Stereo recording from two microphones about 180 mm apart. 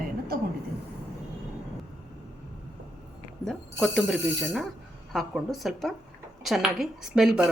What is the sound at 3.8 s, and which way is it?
Speech, centre (ahead or behind).